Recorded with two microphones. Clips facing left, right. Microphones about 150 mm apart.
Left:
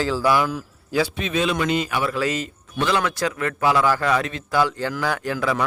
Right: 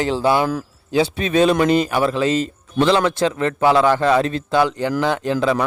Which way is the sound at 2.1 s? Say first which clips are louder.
Right 5 dB; 25° right (ahead or behind).